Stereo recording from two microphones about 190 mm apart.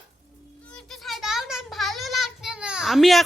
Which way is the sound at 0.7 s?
5° left (ahead or behind).